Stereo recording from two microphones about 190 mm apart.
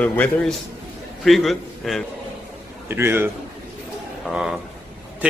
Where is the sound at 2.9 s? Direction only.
10° right (ahead or behind).